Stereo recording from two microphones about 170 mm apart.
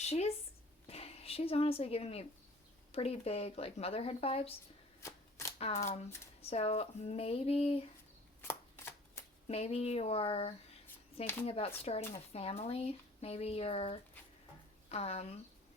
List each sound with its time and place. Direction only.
0.0 s speech: 40° left (ahead or behind)
4.9 s shuffling cards: 15° left (ahead or behind)
5.5 s speech: 40° left (ahead or behind)
8.4 s shuffling cards: 15° left (ahead or behind)
9.5 s speech: 35° left (ahead or behind)